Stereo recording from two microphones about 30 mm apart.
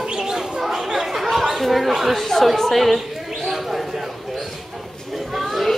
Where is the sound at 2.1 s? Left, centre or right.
Centre.